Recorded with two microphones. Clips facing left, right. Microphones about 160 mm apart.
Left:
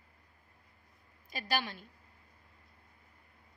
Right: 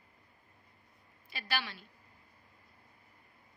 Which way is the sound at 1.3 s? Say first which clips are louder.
Left 3 dB; 45° left (ahead or behind).